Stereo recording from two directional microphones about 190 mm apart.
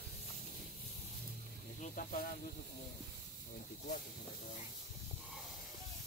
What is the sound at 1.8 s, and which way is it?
Speech, 45° left (ahead or behind).